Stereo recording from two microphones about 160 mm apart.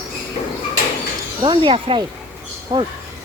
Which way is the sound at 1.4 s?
30° right (ahead or behind).